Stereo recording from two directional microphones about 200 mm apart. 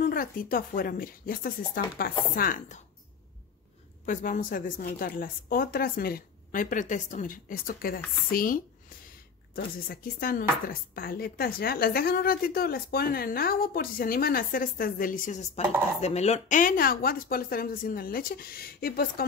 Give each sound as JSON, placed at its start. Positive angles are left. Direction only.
{"t": 0.0, "sound": "speech", "side_deg": 45}
{"t": 4.0, "sound": "speech", "side_deg": 40}